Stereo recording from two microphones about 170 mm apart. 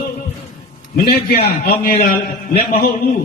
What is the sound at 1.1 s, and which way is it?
A man's voice, 65° left (ahead or behind).